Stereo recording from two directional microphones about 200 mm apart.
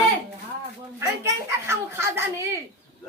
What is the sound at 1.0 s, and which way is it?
A man's voice, 15° right (ahead or behind).